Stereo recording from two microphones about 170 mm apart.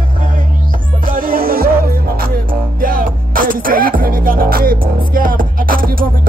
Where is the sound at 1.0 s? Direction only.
60° right (ahead or behind).